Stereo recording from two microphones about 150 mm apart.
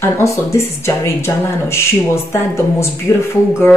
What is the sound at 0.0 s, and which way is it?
A woman's voice, 15° left (ahead or behind).